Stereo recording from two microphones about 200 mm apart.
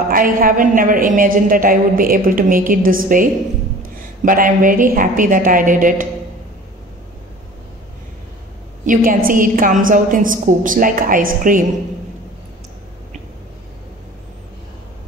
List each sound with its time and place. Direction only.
0.1 s a woman's voice: 45° right (ahead or behind)
8.8 s a woman's voice: 40° right (ahead or behind)